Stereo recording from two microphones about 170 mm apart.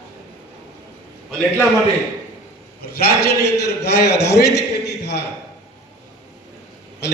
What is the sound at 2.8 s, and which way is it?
A man's voice, 70° left (ahead or behind).